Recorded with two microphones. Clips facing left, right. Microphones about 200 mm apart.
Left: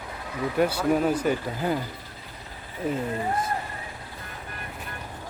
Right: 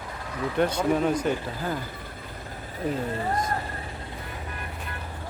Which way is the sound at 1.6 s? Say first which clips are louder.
Left 5 dB; 20° left (ahead or behind).